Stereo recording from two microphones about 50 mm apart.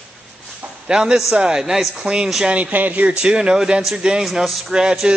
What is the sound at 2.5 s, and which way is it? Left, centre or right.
Speech, right.